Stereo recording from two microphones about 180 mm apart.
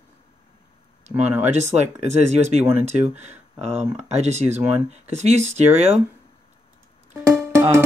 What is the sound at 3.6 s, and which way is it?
Speech, 35° right (ahead or behind).